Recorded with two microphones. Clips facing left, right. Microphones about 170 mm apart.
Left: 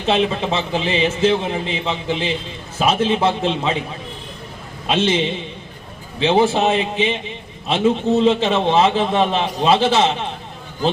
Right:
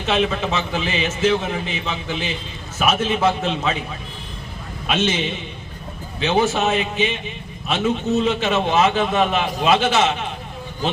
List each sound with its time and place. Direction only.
0.0 s a man's voice: 30° left (ahead or behind)
4.9 s a man's voice: 30° left (ahead or behind)